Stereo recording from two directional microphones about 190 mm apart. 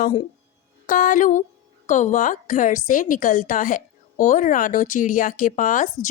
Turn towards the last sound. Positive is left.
turn(degrees=45)  # may be behind; listen again after turning